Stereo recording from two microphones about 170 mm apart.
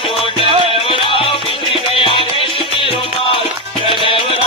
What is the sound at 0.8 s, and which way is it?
Music, 30° left (ahead or behind).